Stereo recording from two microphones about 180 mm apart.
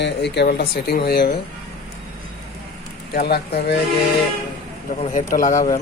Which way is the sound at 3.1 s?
60° left (ahead or behind).